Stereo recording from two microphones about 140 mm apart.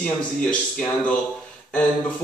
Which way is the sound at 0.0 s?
5° left (ahead or behind).